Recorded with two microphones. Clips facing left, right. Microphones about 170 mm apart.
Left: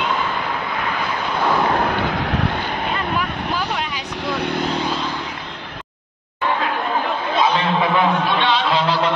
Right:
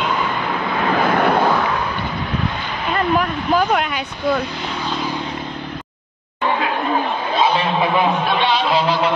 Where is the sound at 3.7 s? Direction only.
70° right (ahead or behind).